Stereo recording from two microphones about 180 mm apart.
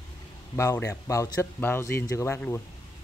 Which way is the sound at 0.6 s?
15° left (ahead or behind).